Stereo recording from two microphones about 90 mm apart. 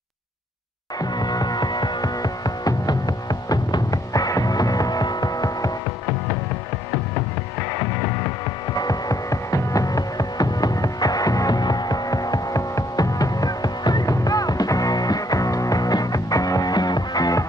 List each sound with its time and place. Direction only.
1.0 s music: 50° left (ahead or behind)
8.7 s music: 45° left (ahead or behind)